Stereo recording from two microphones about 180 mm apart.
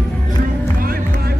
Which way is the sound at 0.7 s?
55° right (ahead or behind).